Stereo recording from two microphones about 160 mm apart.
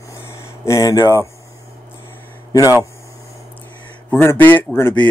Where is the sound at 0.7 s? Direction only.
20° left (ahead or behind).